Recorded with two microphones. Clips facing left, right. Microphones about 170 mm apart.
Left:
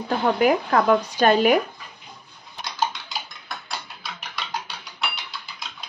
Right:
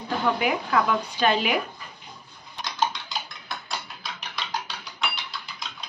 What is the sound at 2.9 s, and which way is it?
Dishes, centre (ahead or behind).